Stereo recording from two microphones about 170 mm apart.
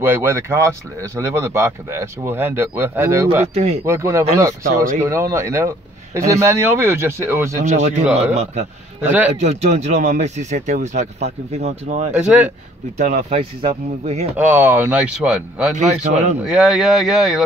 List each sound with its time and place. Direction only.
0.0 s speech: 15° right (ahead or behind)
3.5 s speech: 35° right (ahead or behind)
3.8 s speech: 15° right (ahead or behind)
7.5 s a man's voice: 45° right (ahead or behind)
14.3 s speech: 10° right (ahead or behind)
15.7 s a man's voice: 45° right (ahead or behind)
16.4 s speech: 5° right (ahead or behind)